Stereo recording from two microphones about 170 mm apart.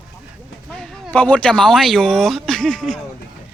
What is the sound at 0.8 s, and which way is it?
Speech, 10° left (ahead or behind).